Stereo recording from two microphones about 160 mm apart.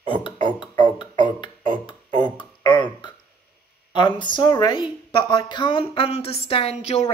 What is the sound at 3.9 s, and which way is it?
A woman's voice, 30° left (ahead or behind).